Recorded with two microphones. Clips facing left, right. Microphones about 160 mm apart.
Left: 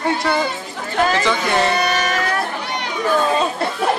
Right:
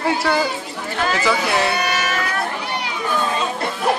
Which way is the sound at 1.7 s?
35° left (ahead or behind).